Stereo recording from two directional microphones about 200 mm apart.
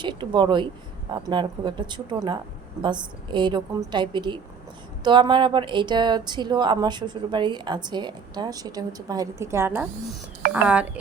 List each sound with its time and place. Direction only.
0.0 s speech: 25° right (ahead or behind); by 10.8 s 5° right (ahead or behind)